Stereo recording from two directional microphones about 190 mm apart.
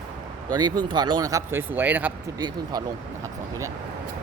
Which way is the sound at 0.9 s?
25° right (ahead or behind).